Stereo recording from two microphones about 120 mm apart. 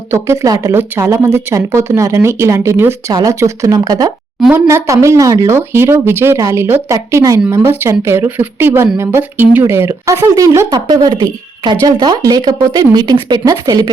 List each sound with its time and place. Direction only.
0.1 s speech: 25° right (ahead or behind)
10.8 s speech: 35° right (ahead or behind)